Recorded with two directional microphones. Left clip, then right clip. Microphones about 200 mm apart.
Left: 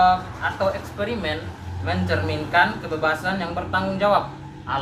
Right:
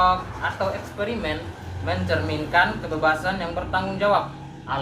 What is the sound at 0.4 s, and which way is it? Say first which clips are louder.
Speech: left 2 dB; 15° left (ahead or behind).